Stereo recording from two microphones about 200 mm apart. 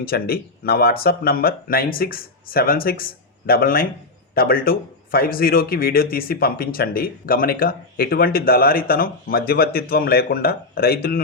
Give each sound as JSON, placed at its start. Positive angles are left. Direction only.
{"t": 0.0, "sound": "speech", "side_deg": 50}